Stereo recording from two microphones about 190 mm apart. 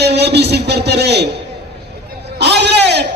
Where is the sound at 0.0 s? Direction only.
60° right (ahead or behind).